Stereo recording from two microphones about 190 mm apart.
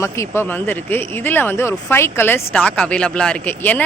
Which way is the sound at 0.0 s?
15° left (ahead or behind).